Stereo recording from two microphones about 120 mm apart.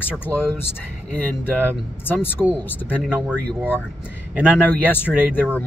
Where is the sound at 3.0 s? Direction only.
15° right (ahead or behind).